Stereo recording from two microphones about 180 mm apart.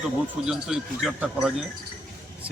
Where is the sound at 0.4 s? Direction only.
5° right (ahead or behind).